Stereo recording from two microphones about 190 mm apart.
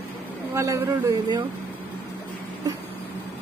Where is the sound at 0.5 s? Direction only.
15° right (ahead or behind).